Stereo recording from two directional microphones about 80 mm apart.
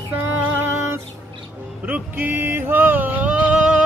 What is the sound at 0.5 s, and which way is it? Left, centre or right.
Music, right.